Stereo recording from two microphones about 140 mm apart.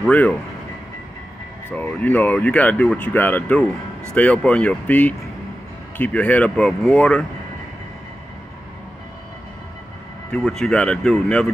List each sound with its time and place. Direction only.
0.1 s speech: 10° left (ahead or behind)
1.8 s speech: 10° left (ahead or behind)
10.3 s speech: 5° left (ahead or behind)